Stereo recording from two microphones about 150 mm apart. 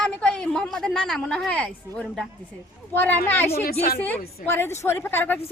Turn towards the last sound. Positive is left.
turn(degrees=15)  # may be behind; listen again after turning